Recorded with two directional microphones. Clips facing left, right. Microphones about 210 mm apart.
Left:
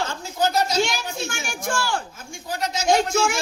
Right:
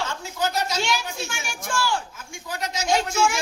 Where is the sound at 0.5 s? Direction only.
45° left (ahead or behind).